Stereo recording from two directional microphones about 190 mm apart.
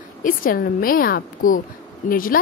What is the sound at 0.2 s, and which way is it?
A woman's voice, 45° left (ahead or behind).